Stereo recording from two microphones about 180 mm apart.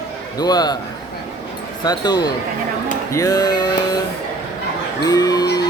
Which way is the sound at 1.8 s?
20° left (ahead or behind).